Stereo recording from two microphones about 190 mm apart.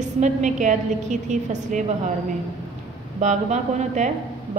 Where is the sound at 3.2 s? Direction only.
40° right (ahead or behind).